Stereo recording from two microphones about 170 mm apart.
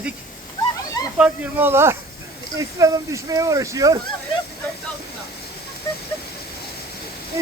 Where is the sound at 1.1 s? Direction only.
10° right (ahead or behind).